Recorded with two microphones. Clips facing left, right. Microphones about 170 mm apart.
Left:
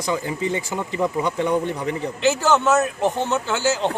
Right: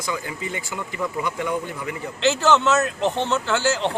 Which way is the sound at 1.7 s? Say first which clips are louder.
Left 5 dB; 35° left (ahead or behind).